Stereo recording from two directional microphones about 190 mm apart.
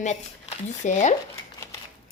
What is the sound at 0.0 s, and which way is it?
Speech, 40° left (ahead or behind).